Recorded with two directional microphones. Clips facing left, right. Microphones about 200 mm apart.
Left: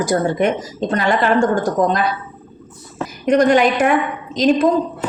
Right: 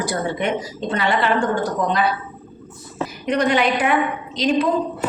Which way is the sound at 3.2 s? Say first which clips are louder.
Left 6 dB; 45° left (ahead or behind).